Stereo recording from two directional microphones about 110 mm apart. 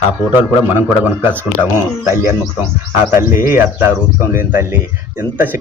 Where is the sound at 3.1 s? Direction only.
20° right (ahead or behind).